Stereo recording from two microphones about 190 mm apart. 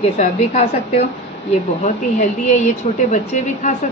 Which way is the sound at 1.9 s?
40° left (ahead or behind).